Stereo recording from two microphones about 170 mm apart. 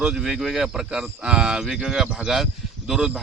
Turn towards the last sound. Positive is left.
turn(degrees=-5)  # may be behind; listen again after turning